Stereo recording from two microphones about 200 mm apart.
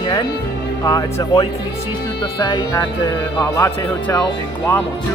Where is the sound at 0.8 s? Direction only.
20° left (ahead or behind).